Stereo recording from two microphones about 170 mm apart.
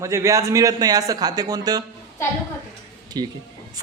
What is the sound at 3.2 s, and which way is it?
Speech, 25° right (ahead or behind).